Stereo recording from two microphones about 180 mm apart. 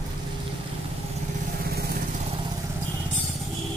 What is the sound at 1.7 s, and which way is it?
Vehicle, 60° right (ahead or behind).